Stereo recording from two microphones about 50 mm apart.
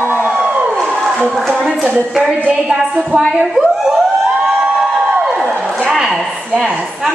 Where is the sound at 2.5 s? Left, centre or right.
Centre.